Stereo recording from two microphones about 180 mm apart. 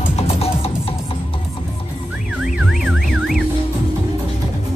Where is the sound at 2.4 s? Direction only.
Centre (ahead or behind).